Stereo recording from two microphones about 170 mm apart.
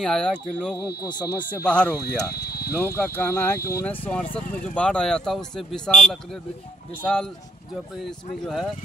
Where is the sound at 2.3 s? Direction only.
65° left (ahead or behind).